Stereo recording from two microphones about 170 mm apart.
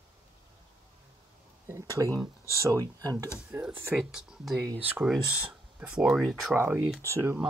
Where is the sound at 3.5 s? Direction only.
10° right (ahead or behind).